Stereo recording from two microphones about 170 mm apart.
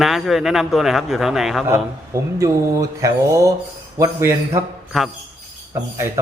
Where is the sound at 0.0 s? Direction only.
Centre (ahead or behind).